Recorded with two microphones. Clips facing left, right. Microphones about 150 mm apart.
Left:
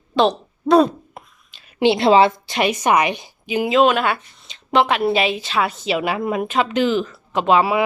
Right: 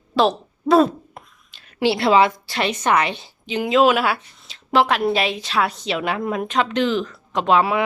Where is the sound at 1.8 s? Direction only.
20° left (ahead or behind).